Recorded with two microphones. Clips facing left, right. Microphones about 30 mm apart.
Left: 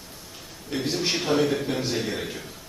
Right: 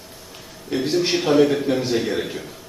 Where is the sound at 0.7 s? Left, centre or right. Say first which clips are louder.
Right 6 dB; centre.